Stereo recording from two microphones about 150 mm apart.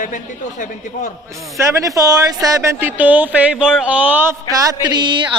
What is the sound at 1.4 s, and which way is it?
Speech, 20° right (ahead or behind).